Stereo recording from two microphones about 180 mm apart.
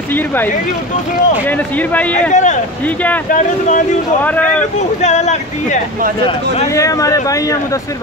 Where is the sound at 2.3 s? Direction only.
40° left (ahead or behind).